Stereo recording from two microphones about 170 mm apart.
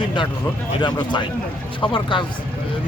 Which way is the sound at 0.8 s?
25° left (ahead or behind).